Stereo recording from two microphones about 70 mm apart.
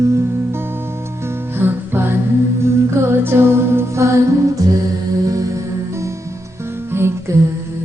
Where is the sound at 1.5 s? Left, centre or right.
Right.